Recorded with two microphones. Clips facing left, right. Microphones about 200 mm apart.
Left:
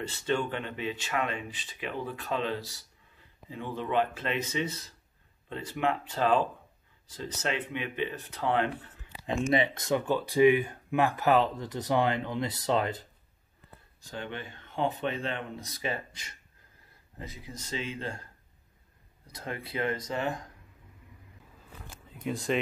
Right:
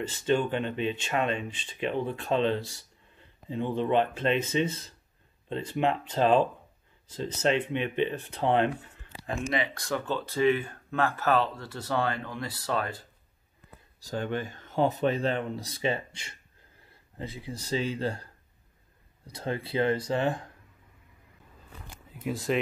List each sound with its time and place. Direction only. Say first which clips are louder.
0.1 s speech: right 5 dB; 20° right (ahead or behind)
9.5 s speech: left 4 dB; 25° left (ahead or behind)
13.9 s speech: right 7 dB; 40° right (ahead or behind)
22.1 s speech: right 1 dB; 5° right (ahead or behind)